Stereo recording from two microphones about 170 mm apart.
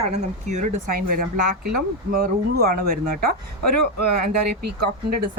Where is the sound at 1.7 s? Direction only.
60° right (ahead or behind).